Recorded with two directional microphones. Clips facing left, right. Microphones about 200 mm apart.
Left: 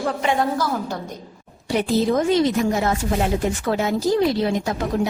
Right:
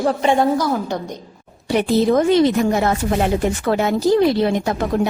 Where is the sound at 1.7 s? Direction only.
60° right (ahead or behind).